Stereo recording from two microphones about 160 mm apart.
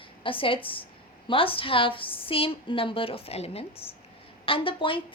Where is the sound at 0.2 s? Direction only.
35° left (ahead or behind).